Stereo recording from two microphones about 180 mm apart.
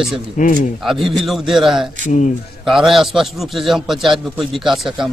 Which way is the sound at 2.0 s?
45° left (ahead or behind).